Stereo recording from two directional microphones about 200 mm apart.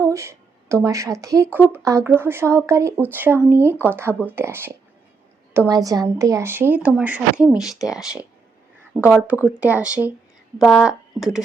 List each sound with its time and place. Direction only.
0.0 s speech: 15° right (ahead or behind)